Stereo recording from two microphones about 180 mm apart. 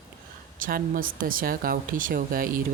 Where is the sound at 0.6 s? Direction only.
50° right (ahead or behind).